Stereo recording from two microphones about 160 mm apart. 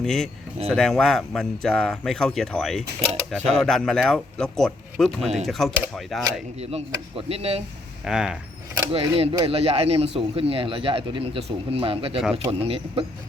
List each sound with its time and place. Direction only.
0.0 s speech: centre (ahead or behind)
5.2 s speech: 40° right (ahead or behind)
5.5 s speech: centre (ahead or behind)
6.6 s speech: 40° right (ahead or behind)
8.0 s speech: 5° right (ahead or behind)
8.7 s speech: 35° right (ahead or behind)